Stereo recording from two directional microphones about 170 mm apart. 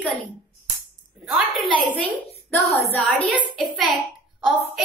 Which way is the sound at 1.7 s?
30° right (ahead or behind).